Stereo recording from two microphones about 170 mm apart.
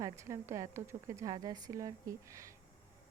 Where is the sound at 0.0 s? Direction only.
15° right (ahead or behind).